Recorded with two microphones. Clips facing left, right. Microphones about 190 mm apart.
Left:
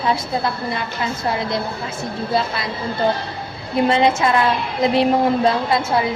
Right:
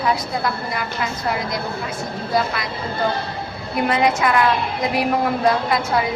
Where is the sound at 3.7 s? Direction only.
25° left (ahead or behind).